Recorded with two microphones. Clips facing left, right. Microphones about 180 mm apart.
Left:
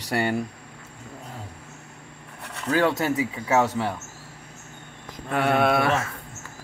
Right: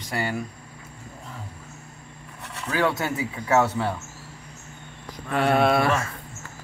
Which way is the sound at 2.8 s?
20° left (ahead or behind).